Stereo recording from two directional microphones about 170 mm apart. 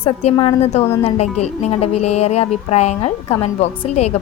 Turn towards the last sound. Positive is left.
turn(degrees=35)  # may be behind; listen again after turning